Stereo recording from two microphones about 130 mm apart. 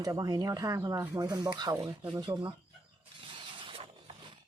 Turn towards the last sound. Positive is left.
turn(degrees=-45)  # may be behind; listen again after turning